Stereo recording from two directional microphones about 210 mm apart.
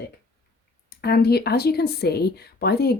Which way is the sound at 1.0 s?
50° left (ahead or behind).